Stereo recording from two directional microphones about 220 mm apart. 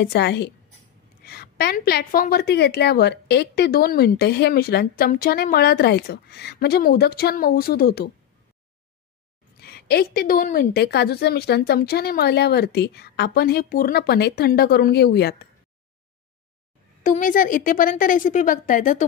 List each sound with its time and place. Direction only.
0.0 s a woman's voice: 50° left (ahead or behind)
9.6 s a woman's voice: 45° left (ahead or behind)
17.0 s a woman's voice: 35° left (ahead or behind)